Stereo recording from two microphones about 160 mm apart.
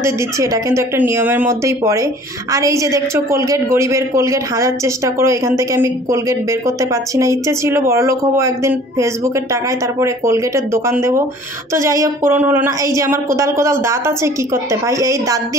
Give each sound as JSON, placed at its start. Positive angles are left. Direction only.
{"t": 0.0, "sound": "a woman's voice", "side_deg": -20}